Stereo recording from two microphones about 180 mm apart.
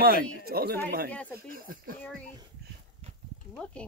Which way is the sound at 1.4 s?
55° right (ahead or behind).